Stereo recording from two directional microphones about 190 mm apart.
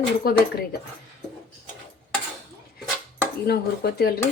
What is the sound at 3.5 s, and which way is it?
Speech, 55° left (ahead or behind).